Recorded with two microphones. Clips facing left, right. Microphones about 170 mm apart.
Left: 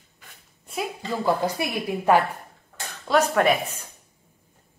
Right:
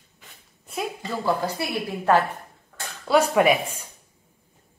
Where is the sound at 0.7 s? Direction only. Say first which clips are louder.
Even; centre (ahead or behind).